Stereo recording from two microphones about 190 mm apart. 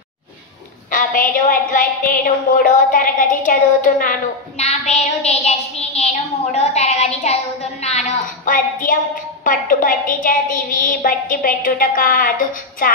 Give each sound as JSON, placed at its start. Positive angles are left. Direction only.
{"t": 0.9, "sound": "a woman's voice", "side_deg": 45}